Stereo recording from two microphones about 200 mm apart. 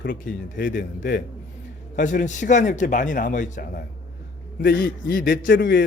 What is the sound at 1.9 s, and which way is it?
A man's voice, 40° left (ahead or behind).